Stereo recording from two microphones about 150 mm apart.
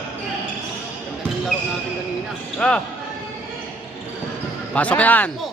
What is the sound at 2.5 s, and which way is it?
Speech, 5° left (ahead or behind).